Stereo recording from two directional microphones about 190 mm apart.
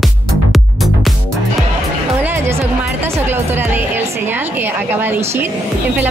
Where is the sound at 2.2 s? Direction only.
10° right (ahead or behind).